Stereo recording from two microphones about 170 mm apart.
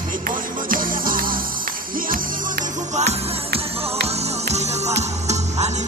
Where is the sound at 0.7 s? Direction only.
55° right (ahead or behind).